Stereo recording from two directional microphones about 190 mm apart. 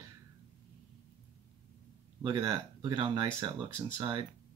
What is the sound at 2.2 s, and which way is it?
Speech, 20° right (ahead or behind).